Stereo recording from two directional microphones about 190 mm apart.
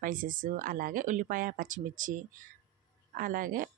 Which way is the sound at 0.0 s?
45° right (ahead or behind).